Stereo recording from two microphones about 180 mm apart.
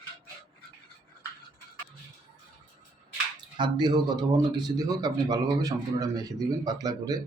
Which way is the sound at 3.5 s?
25° right (ahead or behind).